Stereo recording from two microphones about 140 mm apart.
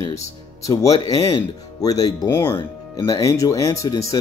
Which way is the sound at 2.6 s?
30° left (ahead or behind).